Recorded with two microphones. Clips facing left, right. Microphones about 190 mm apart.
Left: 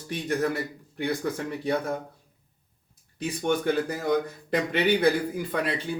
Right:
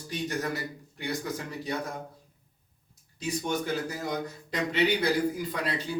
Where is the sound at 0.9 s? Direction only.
60° left (ahead or behind).